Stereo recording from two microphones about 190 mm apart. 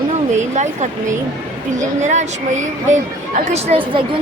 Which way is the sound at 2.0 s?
40° right (ahead or behind).